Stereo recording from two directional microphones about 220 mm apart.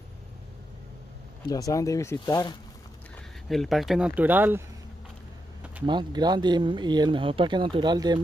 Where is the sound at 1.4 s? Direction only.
15° left (ahead or behind).